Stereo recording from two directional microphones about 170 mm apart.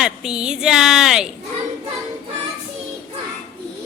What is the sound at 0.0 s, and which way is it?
Speech, 5° right (ahead or behind).